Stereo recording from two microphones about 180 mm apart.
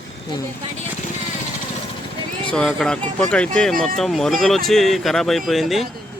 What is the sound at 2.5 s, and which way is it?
Speech, 5° left (ahead or behind).